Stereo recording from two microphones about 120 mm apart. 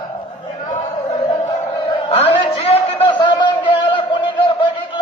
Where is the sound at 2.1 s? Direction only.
55° left (ahead or behind).